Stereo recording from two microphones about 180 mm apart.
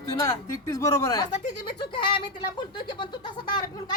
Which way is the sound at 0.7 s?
15° left (ahead or behind).